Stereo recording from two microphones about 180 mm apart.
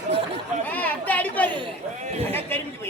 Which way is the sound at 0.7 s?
10° left (ahead or behind).